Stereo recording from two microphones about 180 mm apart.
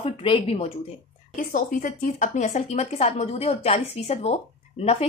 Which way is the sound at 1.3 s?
50° left (ahead or behind).